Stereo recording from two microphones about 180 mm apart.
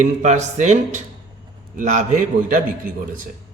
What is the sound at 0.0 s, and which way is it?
A man's voice, 40° right (ahead or behind).